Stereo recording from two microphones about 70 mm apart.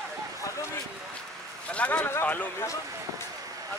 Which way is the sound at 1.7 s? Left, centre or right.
Centre.